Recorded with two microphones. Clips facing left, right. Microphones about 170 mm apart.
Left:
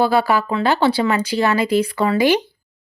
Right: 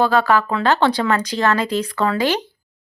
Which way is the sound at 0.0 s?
10° left (ahead or behind).